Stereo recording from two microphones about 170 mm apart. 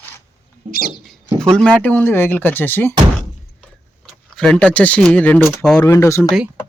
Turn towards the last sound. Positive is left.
turn(degrees=15)  # may be behind; listen again after turning